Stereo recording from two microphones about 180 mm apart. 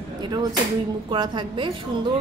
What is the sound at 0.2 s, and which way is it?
A woman's voice, 25° right (ahead or behind).